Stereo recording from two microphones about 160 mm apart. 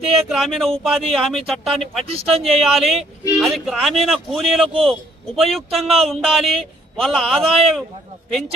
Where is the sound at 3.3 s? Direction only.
Centre (ahead or behind).